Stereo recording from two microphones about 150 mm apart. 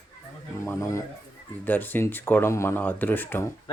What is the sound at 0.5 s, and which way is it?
Speech, 20° left (ahead or behind).